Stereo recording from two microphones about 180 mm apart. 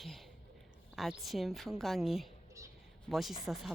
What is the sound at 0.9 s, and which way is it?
Speech, centre (ahead or behind).